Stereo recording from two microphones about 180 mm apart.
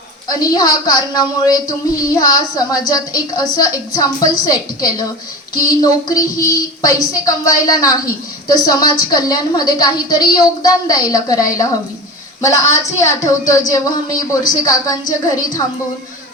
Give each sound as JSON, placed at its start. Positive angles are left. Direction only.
{"t": 0.3, "sound": "a woman's voice", "side_deg": 20}